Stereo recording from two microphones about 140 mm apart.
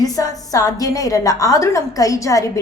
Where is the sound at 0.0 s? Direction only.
25° left (ahead or behind).